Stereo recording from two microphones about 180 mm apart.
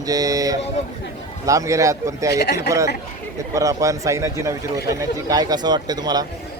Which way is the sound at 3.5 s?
15° right (ahead or behind).